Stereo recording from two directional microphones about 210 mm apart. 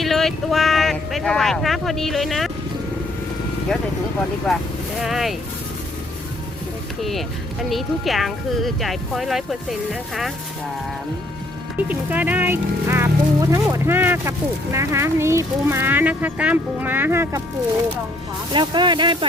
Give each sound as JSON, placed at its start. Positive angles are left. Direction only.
{"t": 0.0, "sound": "speech", "side_deg": 0}
{"t": 4.5, "sound": "speech", "side_deg": 0}
{"t": 7.0, "sound": "speech", "side_deg": 0}
{"t": 11.9, "sound": "speech", "side_deg": -10}
{"t": 18.5, "sound": "speech", "side_deg": -20}